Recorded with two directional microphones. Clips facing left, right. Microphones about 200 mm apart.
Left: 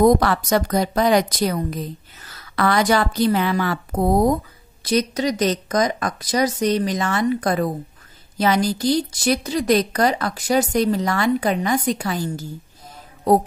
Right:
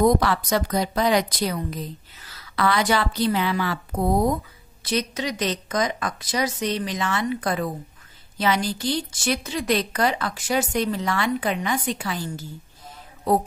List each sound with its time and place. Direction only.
0.0 s a woman's voice: 50° left (ahead or behind)